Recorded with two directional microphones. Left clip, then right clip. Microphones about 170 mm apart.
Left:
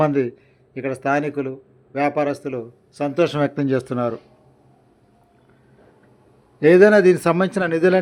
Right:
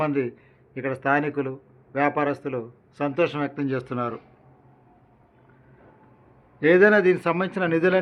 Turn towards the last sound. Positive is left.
turn(degrees=35)  # may be behind; listen again after turning